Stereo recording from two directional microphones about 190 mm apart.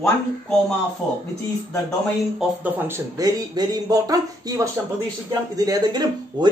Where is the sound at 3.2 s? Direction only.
20° right (ahead or behind).